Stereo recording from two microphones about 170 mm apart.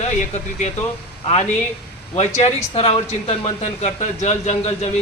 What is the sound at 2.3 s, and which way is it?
A man's voice, 35° left (ahead or behind).